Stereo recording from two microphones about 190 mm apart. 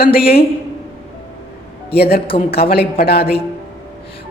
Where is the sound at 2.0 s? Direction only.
55° left (ahead or behind).